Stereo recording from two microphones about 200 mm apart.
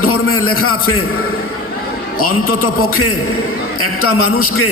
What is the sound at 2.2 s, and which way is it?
Speech, 90° left.